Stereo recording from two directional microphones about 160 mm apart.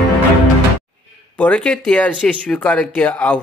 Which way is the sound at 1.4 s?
10° left (ahead or behind).